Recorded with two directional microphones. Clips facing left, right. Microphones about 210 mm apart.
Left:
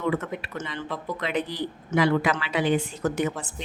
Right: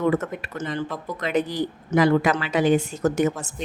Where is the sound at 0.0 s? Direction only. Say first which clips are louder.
Right 4 dB; 45° right (ahead or behind).